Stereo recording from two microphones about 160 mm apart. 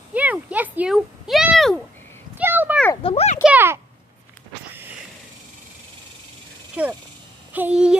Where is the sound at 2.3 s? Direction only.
10° right (ahead or behind).